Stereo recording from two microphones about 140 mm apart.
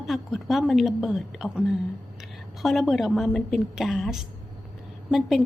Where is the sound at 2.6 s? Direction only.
Centre (ahead or behind).